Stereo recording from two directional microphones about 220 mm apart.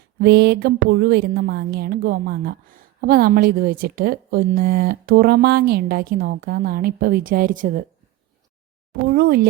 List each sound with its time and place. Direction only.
0.2 s a woman's voice: 50° right (ahead or behind)
8.9 s a woman's voice: 45° right (ahead or behind)